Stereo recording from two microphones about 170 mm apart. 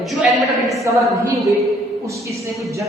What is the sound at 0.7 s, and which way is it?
Speech, 20° right (ahead or behind).